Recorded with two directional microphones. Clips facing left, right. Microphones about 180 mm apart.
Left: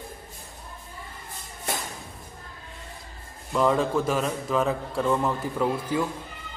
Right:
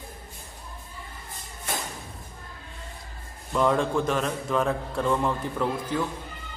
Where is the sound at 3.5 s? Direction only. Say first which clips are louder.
Left 1 dB; centre (ahead or behind).